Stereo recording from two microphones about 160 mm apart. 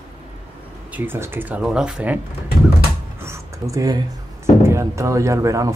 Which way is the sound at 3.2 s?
20° right (ahead or behind).